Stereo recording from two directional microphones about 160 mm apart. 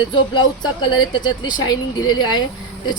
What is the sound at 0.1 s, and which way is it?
Speech, 25° left (ahead or behind).